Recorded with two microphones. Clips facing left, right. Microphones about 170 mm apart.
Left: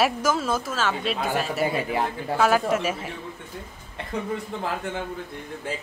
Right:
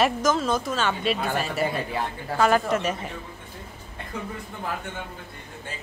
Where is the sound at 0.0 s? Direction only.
5° left (ahead or behind).